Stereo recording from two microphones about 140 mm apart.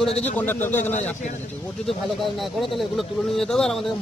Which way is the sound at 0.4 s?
15° left (ahead or behind).